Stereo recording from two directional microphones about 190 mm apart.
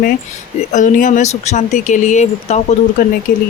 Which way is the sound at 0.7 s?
40° left (ahead or behind).